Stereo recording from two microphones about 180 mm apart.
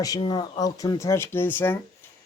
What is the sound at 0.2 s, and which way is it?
Speech, 25° left (ahead or behind).